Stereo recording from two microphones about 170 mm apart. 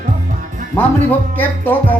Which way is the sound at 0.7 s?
10° left (ahead or behind).